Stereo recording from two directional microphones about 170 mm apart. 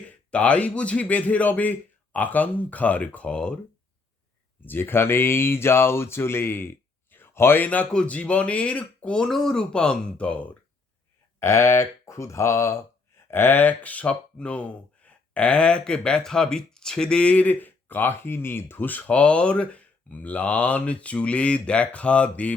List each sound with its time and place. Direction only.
0.1 s speech: 5° left (ahead or behind)
4.6 s speech: 10° left (ahead or behind)